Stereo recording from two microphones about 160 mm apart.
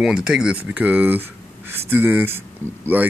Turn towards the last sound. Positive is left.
turn(degrees=-10)  # may be behind; listen again after turning